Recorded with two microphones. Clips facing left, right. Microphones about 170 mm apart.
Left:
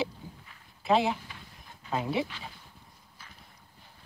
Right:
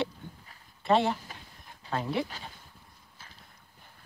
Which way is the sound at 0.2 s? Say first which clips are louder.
Even; 5° left (ahead or behind).